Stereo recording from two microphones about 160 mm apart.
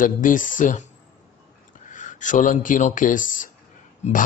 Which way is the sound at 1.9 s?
50° left (ahead or behind).